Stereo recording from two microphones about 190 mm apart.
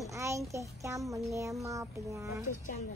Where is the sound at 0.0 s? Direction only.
15° right (ahead or behind).